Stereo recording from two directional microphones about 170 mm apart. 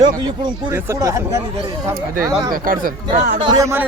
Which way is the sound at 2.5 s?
55° right (ahead or behind).